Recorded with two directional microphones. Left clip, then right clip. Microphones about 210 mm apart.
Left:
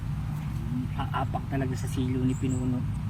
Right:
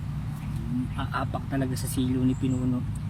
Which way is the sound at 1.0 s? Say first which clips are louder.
Left 1 dB; 30° right (ahead or behind).